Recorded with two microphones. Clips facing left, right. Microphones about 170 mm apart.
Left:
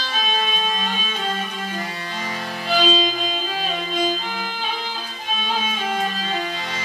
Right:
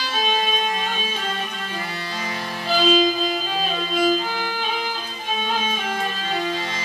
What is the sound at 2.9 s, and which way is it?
Violin, 25° left (ahead or behind).